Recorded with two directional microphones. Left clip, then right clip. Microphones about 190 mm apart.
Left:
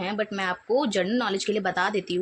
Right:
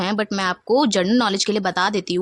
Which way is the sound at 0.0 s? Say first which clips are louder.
Right 6 dB; 50° right (ahead or behind).